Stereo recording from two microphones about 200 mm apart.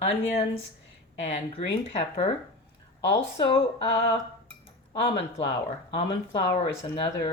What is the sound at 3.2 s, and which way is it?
Speech, 30° left (ahead or behind).